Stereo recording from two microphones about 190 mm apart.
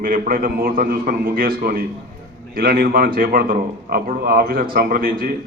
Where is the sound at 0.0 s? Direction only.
50° right (ahead or behind).